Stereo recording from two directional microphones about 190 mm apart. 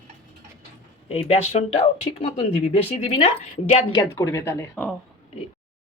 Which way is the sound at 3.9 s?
20° left (ahead or behind).